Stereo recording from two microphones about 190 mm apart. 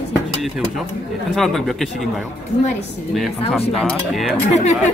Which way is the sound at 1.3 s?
Centre (ahead or behind).